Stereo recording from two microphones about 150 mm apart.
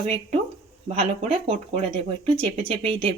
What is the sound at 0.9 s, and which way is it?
Speech, 40° right (ahead or behind).